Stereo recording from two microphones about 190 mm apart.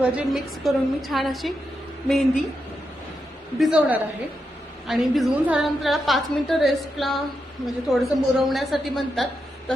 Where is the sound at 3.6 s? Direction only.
5° right (ahead or behind).